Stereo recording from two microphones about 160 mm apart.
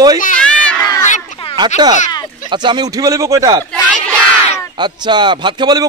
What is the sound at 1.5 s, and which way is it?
A man's voice, 25° right (ahead or behind).